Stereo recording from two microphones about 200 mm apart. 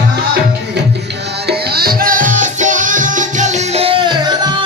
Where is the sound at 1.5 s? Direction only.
50° right (ahead or behind).